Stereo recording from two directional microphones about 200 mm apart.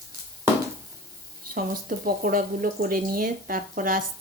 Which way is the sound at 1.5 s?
45° right (ahead or behind).